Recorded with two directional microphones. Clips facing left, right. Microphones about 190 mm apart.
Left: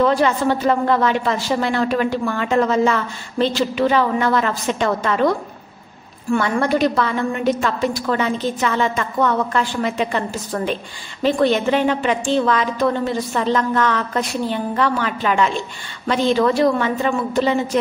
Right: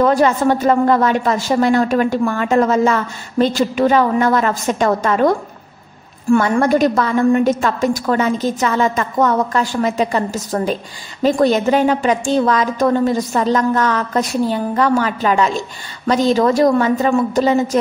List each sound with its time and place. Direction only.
0.0 s a woman's voice: 45° right (ahead or behind)